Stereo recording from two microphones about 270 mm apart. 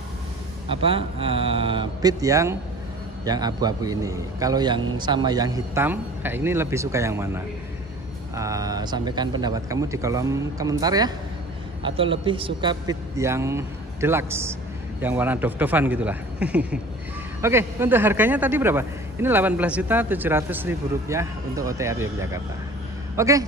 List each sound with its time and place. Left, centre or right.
0.7 s a man's voice: centre